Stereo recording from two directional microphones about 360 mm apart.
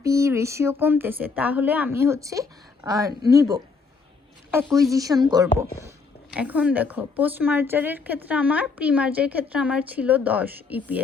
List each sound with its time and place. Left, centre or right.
0.0 s a woman's voice: centre